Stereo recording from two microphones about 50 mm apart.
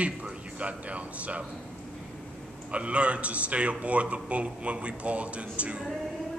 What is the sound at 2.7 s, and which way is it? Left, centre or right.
A man's voice, right.